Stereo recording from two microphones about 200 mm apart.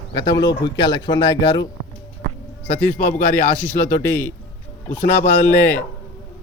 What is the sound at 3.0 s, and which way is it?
Speech, 45° left (ahead or behind).